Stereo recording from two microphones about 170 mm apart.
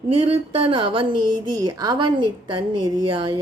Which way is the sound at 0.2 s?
30° right (ahead or behind).